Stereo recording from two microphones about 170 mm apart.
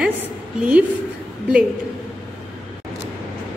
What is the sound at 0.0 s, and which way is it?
Speech, 5° right (ahead or behind).